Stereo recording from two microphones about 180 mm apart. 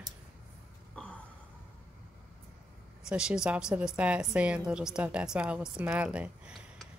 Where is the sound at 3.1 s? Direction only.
5° right (ahead or behind).